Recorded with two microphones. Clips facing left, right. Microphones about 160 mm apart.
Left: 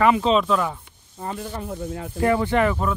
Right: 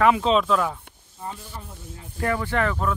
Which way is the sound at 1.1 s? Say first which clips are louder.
Left 6 dB; 75° left (ahead or behind).